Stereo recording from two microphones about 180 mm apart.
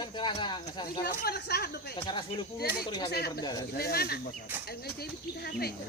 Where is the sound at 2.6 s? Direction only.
60° left (ahead or behind).